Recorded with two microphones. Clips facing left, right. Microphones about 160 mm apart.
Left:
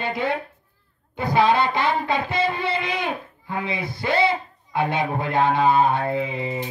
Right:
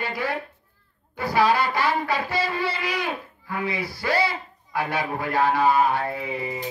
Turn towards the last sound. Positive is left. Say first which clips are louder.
# left 4 dB
turn(degrees=25)  # may be behind; listen again after turning